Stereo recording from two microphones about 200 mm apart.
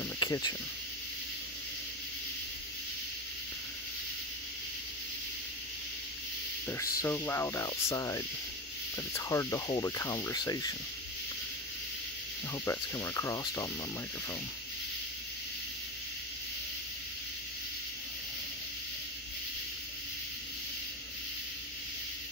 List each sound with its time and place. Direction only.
0.2 s speech: 20° left (ahead or behind)
6.7 s speech: 15° left (ahead or behind)
12.6 s speech: 15° left (ahead or behind)